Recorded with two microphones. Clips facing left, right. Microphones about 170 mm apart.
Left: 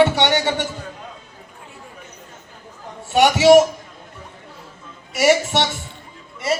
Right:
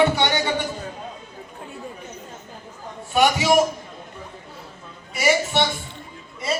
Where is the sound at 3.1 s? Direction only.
75° left (ahead or behind).